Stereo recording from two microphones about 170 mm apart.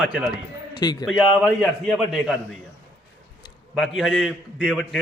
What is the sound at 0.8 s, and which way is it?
Speech, 25° left (ahead or behind).